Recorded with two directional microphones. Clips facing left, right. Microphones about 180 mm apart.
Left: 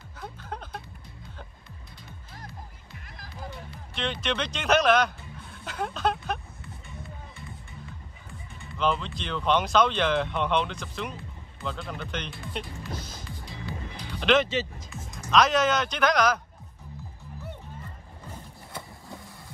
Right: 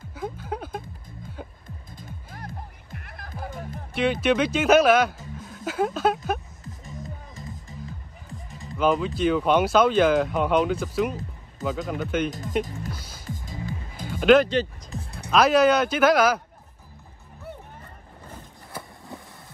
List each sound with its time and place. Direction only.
0.1 s a sound: 10° right (ahead or behind)
2.9 s music: 55° right (ahead or behind)
3.9 s speech: 10° right (ahead or behind)
6.6 s music: 40° right (ahead or behind)
9.0 s speech: 5° right (ahead or behind)
12.3 s music: 40° right (ahead or behind)
14.1 s speech: 5° right (ahead or behind)